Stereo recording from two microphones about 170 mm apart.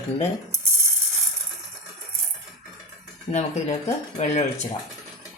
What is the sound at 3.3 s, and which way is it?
Speech, 35° left (ahead or behind).